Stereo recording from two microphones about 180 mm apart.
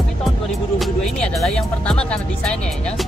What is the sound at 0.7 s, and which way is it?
Speech, centre (ahead or behind).